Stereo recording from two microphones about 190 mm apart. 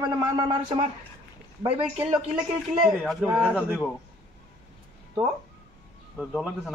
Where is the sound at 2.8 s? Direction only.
5° right (ahead or behind).